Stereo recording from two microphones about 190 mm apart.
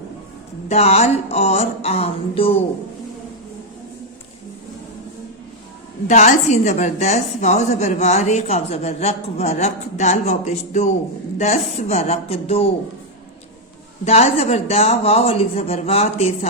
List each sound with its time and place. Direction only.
0.7 s a woman's voice: 35° left (ahead or behind)
6.1 s a woman's voice: 40° left (ahead or behind)
14.0 s a woman's voice: 35° left (ahead or behind)